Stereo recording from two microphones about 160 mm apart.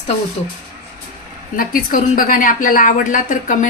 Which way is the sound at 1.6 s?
60° left (ahead or behind).